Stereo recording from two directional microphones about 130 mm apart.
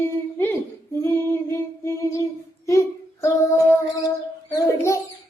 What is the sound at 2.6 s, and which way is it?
Child singing, 20° left (ahead or behind).